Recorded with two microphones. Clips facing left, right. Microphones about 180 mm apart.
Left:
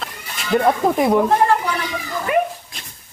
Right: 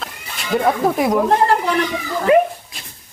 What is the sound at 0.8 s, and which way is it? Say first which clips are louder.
Speech: even; centre (ahead or behind).